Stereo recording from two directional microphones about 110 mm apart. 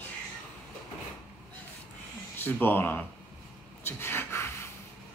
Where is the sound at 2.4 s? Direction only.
20° left (ahead or behind).